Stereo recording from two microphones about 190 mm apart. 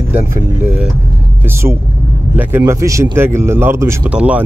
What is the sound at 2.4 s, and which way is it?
Speech, 10° right (ahead or behind).